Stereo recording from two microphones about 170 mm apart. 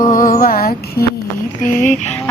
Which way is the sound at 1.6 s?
50° left (ahead or behind).